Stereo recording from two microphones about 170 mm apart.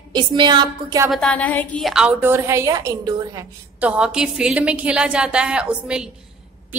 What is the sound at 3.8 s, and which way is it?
A woman's voice, 5° right (ahead or behind).